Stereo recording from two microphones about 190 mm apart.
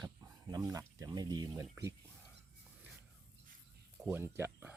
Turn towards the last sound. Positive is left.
turn(degrees=-10)  # may be behind; listen again after turning